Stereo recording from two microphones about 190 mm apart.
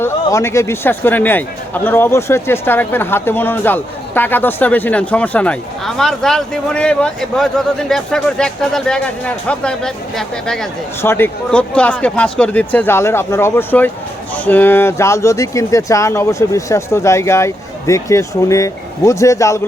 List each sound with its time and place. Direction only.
0.0 s a man's voice: 15° left (ahead or behind)